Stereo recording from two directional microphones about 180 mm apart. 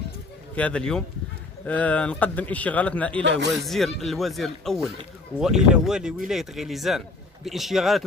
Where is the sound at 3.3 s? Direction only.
75° right (ahead or behind).